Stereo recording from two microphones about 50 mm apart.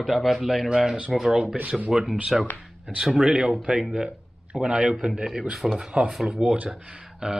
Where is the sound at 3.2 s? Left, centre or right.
Centre.